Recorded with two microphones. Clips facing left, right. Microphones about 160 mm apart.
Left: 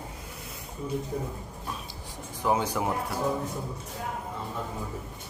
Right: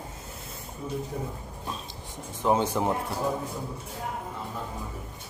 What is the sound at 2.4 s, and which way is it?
Speech, 25° right (ahead or behind).